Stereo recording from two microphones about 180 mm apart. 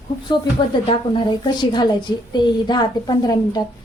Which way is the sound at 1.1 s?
25° left (ahead or behind).